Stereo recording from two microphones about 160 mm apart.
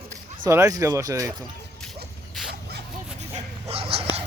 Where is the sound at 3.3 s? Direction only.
40° right (ahead or behind).